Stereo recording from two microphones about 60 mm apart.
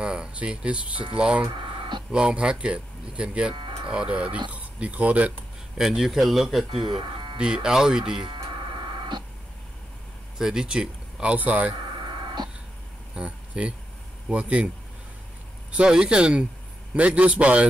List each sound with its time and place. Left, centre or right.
0.0 s speech: centre
5.8 s speech: centre
7.3 s speech: centre
10.3 s speech: centre
13.1 s speech: centre
15.7 s speech: centre